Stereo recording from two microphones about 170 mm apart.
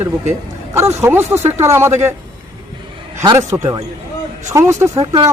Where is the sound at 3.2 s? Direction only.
20° right (ahead or behind).